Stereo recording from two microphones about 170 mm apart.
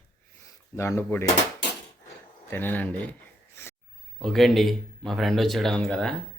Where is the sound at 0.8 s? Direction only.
15° left (ahead or behind).